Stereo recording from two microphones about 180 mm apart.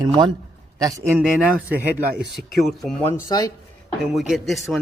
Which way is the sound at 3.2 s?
20° left (ahead or behind).